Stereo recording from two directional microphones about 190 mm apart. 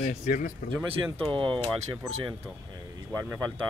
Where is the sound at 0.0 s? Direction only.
40° left (ahead or behind).